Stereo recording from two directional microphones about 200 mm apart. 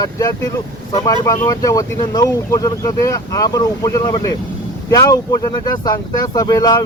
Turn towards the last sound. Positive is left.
turn(degrees=20)  # may be behind; listen again after turning